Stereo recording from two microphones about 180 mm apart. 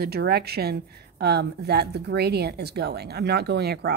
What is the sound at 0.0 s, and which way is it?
A woman's voice, 60° right (ahead or behind).